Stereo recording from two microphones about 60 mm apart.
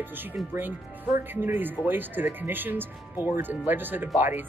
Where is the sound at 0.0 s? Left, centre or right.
Right.